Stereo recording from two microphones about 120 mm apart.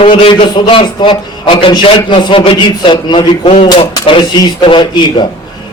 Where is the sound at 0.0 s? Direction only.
45° left (ahead or behind).